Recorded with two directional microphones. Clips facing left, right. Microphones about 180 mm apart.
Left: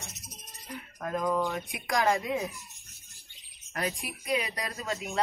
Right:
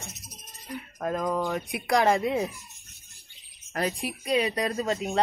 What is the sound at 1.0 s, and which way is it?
Speech, 40° right (ahead or behind).